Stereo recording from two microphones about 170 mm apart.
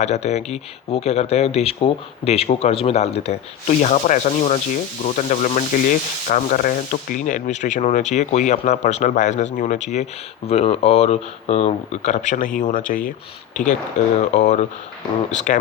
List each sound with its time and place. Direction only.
0.0 s speech: 40° left (ahead or behind)
14.2 s speech: 45° left (ahead or behind)